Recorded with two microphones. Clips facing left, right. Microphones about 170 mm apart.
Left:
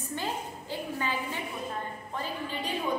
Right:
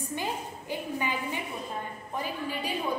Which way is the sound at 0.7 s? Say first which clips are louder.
Right 1 dB; 15° right (ahead or behind).